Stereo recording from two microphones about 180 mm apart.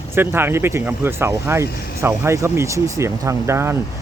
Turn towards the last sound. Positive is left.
turn(degrees=-15)  # may be behind; listen again after turning